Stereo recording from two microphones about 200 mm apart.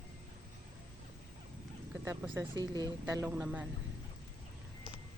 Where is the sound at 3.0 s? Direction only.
10° right (ahead or behind).